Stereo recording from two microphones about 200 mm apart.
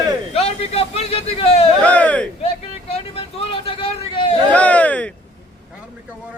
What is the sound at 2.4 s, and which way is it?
Vehicle, 30° left (ahead or behind).